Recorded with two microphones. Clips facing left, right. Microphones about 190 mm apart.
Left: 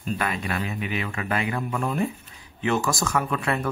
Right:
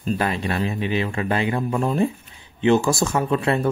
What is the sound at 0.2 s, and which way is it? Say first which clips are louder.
Speech: right 5 dB; 30° right (ahead or behind).